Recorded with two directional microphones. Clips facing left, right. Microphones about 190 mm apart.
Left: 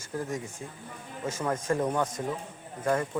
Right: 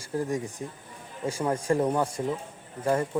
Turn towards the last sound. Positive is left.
turn(degrees=-10)  # may be behind; listen again after turning